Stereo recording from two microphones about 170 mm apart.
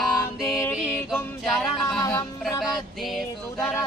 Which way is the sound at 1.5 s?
Centre (ahead or behind).